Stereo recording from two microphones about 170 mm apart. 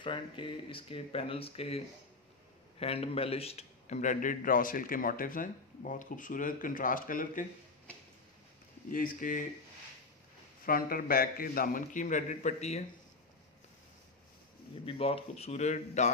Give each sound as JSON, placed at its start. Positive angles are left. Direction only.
{"t": 0.0, "sound": "speech", "side_deg": 30}
{"t": 2.8, "sound": "a man's voice", "side_deg": 35}
{"t": 8.9, "sound": "a man's voice", "side_deg": 55}
{"t": 10.6, "sound": "a man's voice", "side_deg": 60}
{"t": 14.9, "sound": "speech", "side_deg": 35}